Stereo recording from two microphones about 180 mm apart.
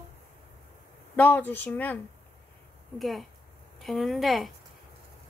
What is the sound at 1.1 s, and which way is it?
Speech, 10° left (ahead or behind).